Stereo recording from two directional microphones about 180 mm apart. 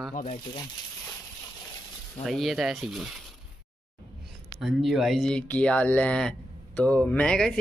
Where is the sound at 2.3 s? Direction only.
Centre (ahead or behind).